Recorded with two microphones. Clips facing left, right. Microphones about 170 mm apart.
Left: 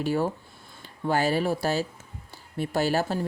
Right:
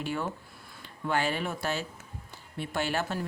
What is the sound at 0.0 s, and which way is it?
Speech, 35° left (ahead or behind).